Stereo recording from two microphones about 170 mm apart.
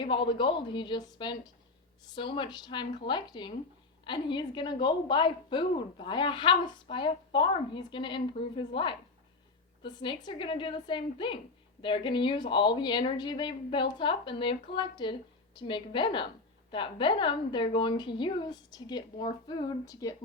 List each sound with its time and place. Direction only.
0.0 s a woman's voice: 30° left (ahead or behind)